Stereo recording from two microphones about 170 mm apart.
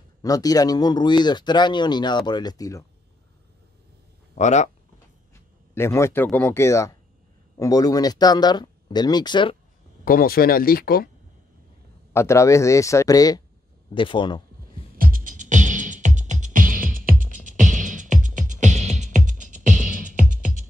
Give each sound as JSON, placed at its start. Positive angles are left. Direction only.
{"t": 0.2, "sound": "speech", "side_deg": 20}
{"t": 4.4, "sound": "speech", "side_deg": 40}
{"t": 5.3, "sound": "speech", "side_deg": 15}
{"t": 10.0, "sound": "speech", "side_deg": 60}
{"t": 12.1, "sound": "speech", "side_deg": 15}
{"t": 15.0, "sound": "music", "side_deg": -55}